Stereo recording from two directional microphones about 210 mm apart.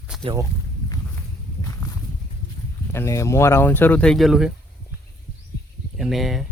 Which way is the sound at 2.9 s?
15° left (ahead or behind).